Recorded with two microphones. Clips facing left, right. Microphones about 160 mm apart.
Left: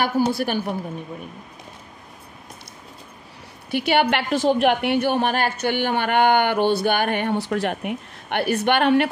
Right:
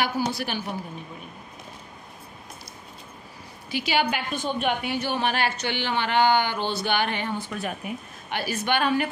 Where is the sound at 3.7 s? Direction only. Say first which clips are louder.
Left 6 dB; 60° left (ahead or behind).